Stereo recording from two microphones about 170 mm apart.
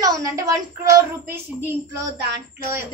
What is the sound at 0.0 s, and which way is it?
Speech, 20° right (ahead or behind).